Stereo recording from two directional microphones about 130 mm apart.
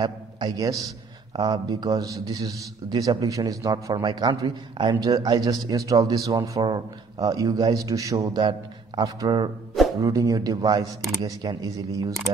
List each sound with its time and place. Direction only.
0.0 s a man's voice: 35° right (ahead or behind)